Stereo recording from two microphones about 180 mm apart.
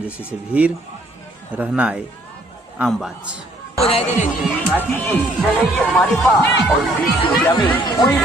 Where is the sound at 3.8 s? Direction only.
35° left (ahead or behind).